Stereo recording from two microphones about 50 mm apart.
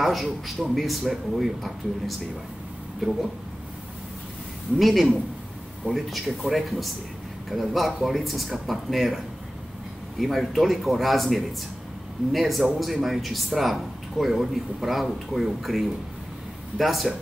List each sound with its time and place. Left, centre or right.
0.0 s a man's voice: centre
4.7 s a man's voice: centre